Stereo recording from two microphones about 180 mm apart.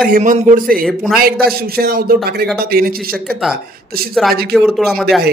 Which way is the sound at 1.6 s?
55° right (ahead or behind).